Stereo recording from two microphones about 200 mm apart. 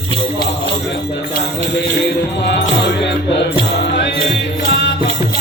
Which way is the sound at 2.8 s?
60° left (ahead or behind).